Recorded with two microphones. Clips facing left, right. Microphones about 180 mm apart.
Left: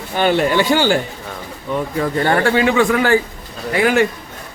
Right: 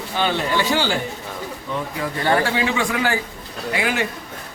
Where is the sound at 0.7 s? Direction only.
50° left (ahead or behind).